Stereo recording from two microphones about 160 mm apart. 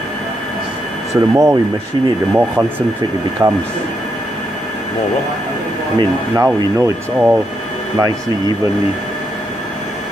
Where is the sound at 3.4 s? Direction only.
20° right (ahead or behind).